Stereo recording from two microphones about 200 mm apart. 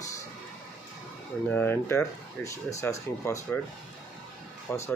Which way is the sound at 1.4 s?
10° left (ahead or behind).